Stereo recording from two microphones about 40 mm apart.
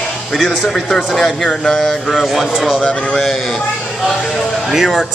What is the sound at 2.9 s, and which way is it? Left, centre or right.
Speech, left.